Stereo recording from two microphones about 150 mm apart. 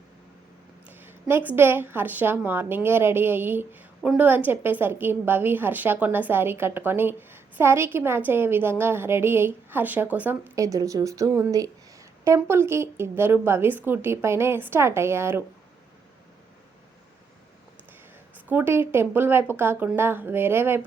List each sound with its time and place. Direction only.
0.9 s a woman's voice: 15° right (ahead or behind)
18.5 s a woman's voice: 15° right (ahead or behind)